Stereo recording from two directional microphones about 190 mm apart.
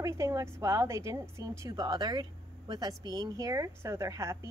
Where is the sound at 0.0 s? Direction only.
15° right (ahead or behind).